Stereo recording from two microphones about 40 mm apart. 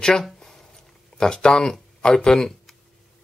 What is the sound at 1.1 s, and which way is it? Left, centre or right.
Speech, centre.